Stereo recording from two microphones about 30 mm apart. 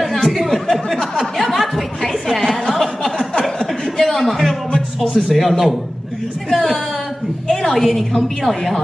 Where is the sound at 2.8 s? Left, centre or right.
Centre.